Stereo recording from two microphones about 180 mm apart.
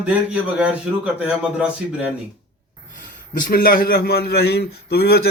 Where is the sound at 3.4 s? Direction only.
50° left (ahead or behind).